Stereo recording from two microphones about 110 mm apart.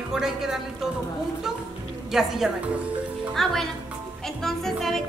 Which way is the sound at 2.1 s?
5° right (ahead or behind).